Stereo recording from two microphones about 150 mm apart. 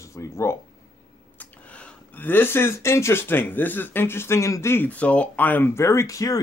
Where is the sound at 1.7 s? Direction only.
10° left (ahead or behind).